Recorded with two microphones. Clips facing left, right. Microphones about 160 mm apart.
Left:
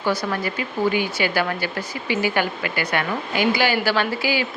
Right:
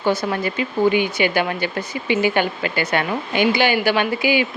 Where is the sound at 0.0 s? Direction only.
20° right (ahead or behind).